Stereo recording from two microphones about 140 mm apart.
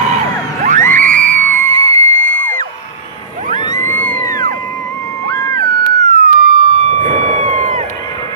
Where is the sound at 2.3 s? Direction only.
10° left (ahead or behind).